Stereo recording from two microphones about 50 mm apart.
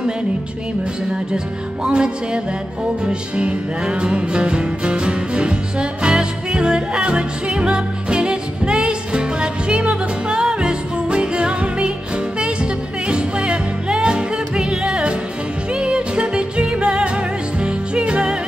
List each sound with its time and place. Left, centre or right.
1.9 s music: centre
13.1 s music: centre